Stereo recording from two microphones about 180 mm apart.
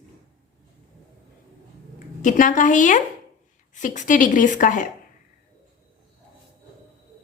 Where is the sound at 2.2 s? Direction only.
45° left (ahead or behind).